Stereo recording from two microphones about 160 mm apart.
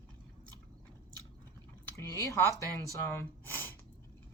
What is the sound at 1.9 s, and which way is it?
Speech, 20° left (ahead or behind).